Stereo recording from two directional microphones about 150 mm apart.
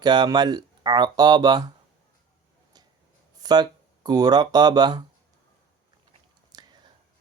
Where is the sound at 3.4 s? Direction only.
25° right (ahead or behind).